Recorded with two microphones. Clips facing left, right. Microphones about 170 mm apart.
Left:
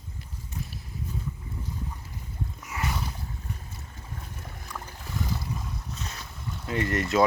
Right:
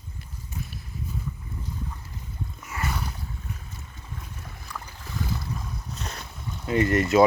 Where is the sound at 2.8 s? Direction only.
Centre (ahead or behind).